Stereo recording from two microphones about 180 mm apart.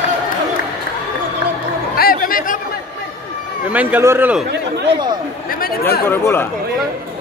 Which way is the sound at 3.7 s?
10° right (ahead or behind).